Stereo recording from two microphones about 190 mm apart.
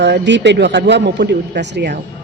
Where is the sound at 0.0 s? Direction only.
65° right (ahead or behind).